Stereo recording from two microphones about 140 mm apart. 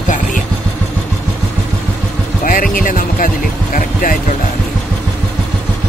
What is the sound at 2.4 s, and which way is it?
Speech, 75° left (ahead or behind).